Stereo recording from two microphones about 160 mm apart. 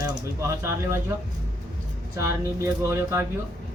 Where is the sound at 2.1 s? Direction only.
15° right (ahead or behind).